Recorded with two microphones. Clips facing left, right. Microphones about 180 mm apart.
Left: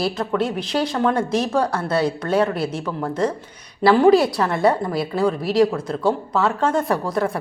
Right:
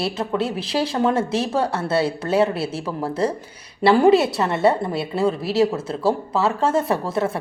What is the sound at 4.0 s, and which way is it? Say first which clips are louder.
Speech: left 1 dB; centre (ahead or behind).